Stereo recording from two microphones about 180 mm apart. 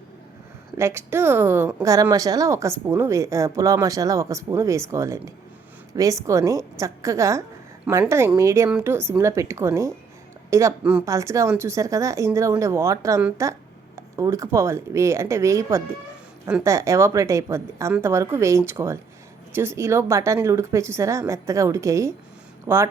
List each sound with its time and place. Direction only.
0.8 s speech: 15° right (ahead or behind)